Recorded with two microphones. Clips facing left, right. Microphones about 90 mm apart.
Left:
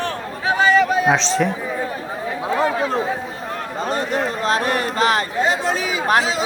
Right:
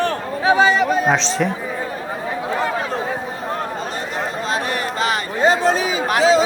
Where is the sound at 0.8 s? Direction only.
Centre (ahead or behind).